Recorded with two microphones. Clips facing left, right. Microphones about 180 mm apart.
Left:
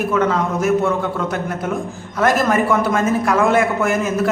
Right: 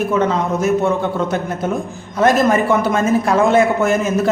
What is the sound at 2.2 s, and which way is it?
A man's voice, 25° right (ahead or behind).